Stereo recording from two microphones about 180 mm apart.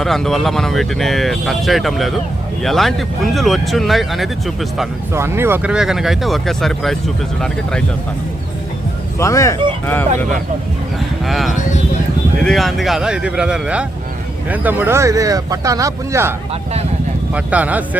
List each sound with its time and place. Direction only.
0.0 s speech: centre (ahead or behind)
5.1 s speech: 15° right (ahead or behind); by 7.9 s 5° left (ahead or behind)
9.1 s speech: 15° left (ahead or behind)
11.3 s speech: centre (ahead or behind); by 16.3 s 15° right (ahead or behind)
17.3 s speech: 10° right (ahead or behind)